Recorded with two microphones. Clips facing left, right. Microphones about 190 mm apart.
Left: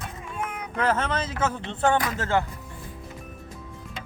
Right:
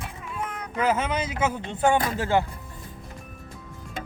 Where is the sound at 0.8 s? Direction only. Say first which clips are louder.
Right 1 dB; 10° right (ahead or behind).